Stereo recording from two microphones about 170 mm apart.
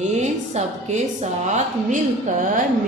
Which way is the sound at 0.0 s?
40° right (ahead or behind).